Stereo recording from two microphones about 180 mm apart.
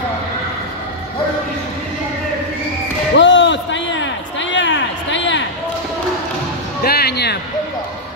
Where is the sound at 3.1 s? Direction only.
90° left.